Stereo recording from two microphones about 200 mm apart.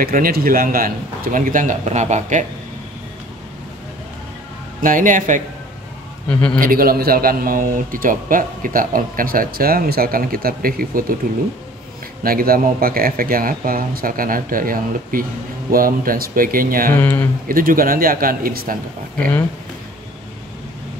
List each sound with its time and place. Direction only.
0.0 s a man's voice: 45° right (ahead or behind)
4.8 s speech: 40° right (ahead or behind)
6.2 s a man's voice: 5° left (ahead or behind)
6.6 s a man's voice: 45° right (ahead or behind)
12.2 s a man's voice: 45° right (ahead or behind)
16.9 s speech: 10° left (ahead or behind)
17.5 s a man's voice: 45° right (ahead or behind)